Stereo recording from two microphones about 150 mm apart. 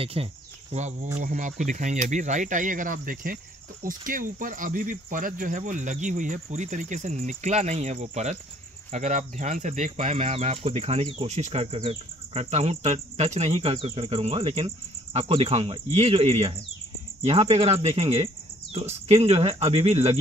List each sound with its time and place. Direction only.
0.0 s cricket: 40° right (ahead or behind)
1.1 s speech: 55° right (ahead or behind)